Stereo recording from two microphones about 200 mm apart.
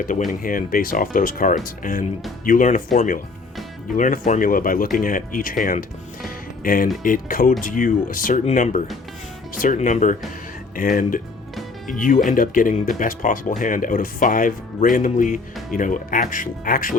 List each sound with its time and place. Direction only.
0.3 s speech: 45° left (ahead or behind)
6.2 s music: 45° left (ahead or behind)
7.0 s speech: 45° left (ahead or behind)